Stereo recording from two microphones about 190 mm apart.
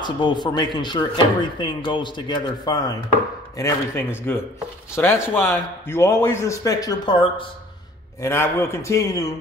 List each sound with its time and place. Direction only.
0.0 s a man's voice: 25° left (ahead or behind)
8.2 s a man's voice: 15° left (ahead or behind)